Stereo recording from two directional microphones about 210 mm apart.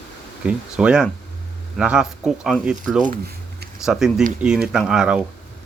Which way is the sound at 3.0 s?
40° right (ahead or behind).